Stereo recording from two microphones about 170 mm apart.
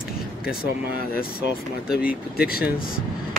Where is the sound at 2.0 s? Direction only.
60° left (ahead or behind).